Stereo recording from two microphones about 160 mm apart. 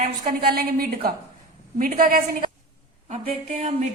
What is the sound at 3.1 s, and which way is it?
Speech, 45° right (ahead or behind).